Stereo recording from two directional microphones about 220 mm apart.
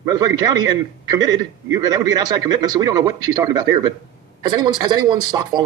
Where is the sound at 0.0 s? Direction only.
15° right (ahead or behind).